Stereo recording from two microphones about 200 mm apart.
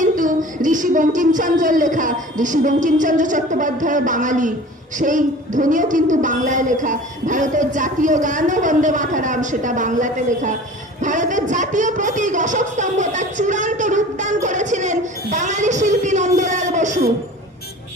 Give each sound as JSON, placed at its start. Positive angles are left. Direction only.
{"t": 0.0, "sound": "a woman's voice", "side_deg": -40}